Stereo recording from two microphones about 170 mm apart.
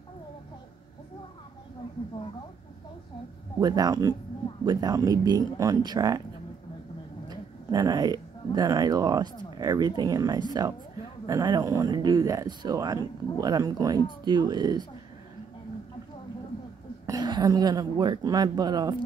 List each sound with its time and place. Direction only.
3.6 s speech: 20° right (ahead or behind)
7.2 s speech: 20° right (ahead or behind)
17.0 s speech: 20° right (ahead or behind)